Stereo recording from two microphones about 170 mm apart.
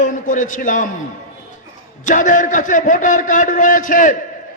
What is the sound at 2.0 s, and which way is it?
A man's voice, 50° left (ahead or behind).